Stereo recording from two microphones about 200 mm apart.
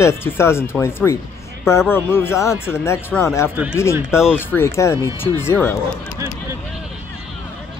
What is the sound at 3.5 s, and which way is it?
Speech, 5° right (ahead or behind).